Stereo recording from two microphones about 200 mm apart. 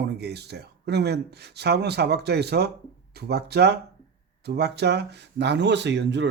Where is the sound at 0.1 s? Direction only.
55° right (ahead or behind).